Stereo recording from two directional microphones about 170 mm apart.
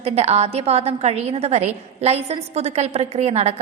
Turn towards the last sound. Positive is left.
turn(degrees=-40)  # may be behind; listen again after turning